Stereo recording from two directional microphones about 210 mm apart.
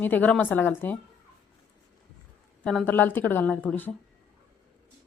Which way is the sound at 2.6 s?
5° left (ahead or behind).